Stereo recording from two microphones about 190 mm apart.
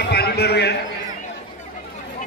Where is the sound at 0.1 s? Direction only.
60° left (ahead or behind).